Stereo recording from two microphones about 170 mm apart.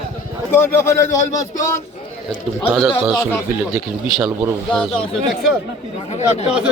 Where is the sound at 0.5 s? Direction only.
15° left (ahead or behind).